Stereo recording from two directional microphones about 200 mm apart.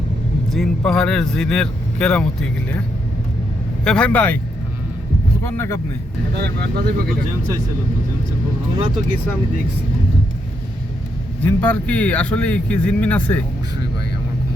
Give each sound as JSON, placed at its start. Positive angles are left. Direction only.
{"t": 0.5, "sound": "speech", "side_deg": 0}
{"t": 3.8, "sound": "speech", "side_deg": 5}
{"t": 5.4, "sound": "speech", "side_deg": 15}
{"t": 6.4, "sound": "speech", "side_deg": -55}
{"t": 11.4, "sound": "speech", "side_deg": 10}